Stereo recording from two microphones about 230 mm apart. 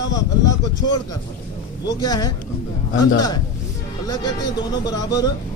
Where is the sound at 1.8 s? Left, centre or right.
Centre.